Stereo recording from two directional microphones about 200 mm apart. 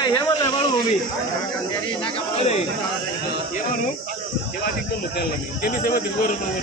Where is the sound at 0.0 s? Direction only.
20° left (ahead or behind).